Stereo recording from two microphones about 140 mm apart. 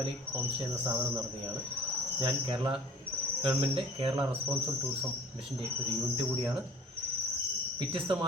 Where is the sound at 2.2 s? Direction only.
35° right (ahead or behind).